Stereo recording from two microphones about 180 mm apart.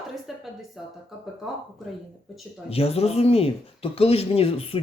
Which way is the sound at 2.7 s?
35° left (ahead or behind).